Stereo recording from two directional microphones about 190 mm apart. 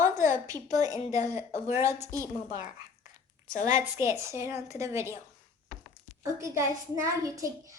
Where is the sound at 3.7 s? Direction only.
15° right (ahead or behind).